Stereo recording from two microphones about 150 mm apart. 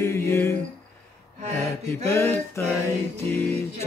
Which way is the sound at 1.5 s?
20° left (ahead or behind).